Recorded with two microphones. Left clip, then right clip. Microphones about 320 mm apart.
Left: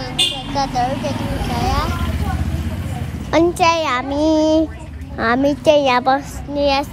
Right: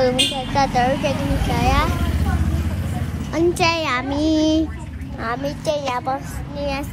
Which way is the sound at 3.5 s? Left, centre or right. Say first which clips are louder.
Left 4 dB; centre.